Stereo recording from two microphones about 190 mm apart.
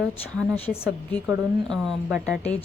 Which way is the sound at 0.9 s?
Centre (ahead or behind).